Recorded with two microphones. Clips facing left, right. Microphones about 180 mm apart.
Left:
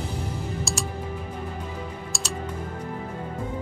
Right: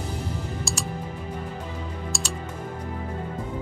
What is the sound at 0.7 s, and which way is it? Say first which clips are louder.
Music: left 2 dB; centre (ahead or behind).